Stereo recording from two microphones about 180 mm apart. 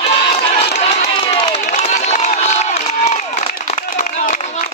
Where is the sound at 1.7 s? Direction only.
40° left (ahead or behind).